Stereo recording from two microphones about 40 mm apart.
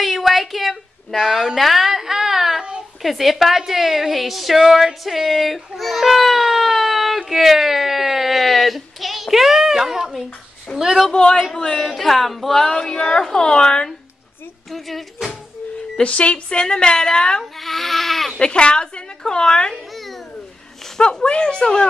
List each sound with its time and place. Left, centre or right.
0.0 s a sound: centre
1.6 s music: centre
3.0 s a woman's voice: centre
11.1 s speech: centre
11.9 s speech: centre
14.7 s speech: centre
16.0 s a woman's voice: left
17.4 s speech: centre
18.4 s a woman's voice: left
21.0 s a woman's voice: left